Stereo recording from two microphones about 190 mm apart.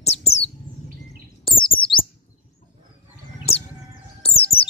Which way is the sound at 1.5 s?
25° left (ahead or behind).